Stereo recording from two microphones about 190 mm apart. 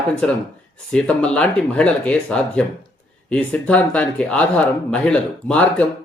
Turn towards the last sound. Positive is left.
turn(degrees=5)  # may be behind; listen again after turning